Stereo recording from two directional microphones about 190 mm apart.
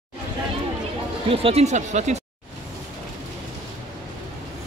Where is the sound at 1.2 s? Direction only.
30° right (ahead or behind).